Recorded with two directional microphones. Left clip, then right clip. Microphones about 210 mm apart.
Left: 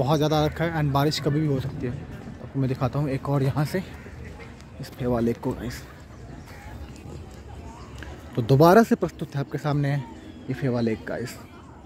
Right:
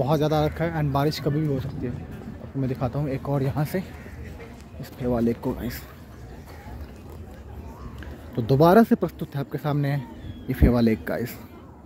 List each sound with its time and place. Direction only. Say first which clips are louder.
0.0 s speech: even; 5° left (ahead or behind)
4.9 s a man's voice: even; 10° left (ahead or behind)
8.4 s a man's voice: left 1 dB; 5° left (ahead or behind)
10.5 s speech: right 4 dB; 15° right (ahead or behind)